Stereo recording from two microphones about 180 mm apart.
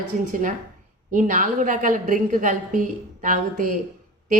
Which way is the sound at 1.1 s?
45° right (ahead or behind).